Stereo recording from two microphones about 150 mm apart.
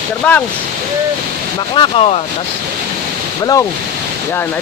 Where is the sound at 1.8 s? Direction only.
40° left (ahead or behind).